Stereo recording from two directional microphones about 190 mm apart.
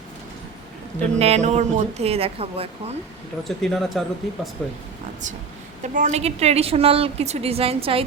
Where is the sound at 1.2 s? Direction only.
35° right (ahead or behind).